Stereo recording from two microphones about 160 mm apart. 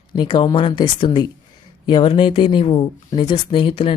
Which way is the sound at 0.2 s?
30° left (ahead or behind).